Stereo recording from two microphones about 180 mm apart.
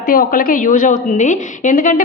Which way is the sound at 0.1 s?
50° left (ahead or behind).